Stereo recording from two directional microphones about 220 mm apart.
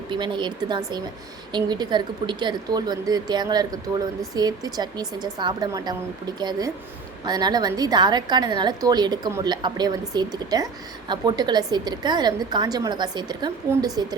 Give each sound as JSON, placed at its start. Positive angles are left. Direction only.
{"t": 0.1, "sound": "a woman's voice", "side_deg": -20}